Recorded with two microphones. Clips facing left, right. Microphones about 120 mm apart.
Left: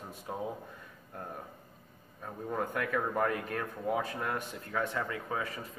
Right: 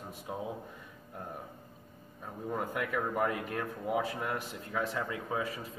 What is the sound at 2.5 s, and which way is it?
Speech, 10° right (ahead or behind).